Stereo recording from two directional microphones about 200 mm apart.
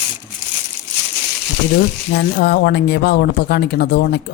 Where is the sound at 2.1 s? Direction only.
55° left (ahead or behind).